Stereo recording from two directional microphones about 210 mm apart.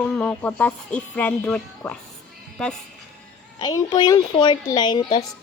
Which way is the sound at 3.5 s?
20° left (ahead or behind).